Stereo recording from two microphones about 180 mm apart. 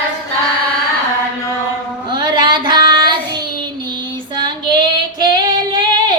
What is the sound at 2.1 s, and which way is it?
Child singing, 25° right (ahead or behind).